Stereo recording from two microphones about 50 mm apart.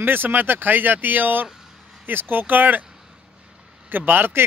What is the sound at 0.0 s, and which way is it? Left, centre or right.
A man's voice, right.